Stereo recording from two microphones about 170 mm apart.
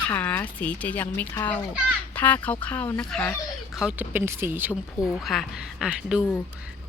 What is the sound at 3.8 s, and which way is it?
Speech, 5° right (ahead or behind).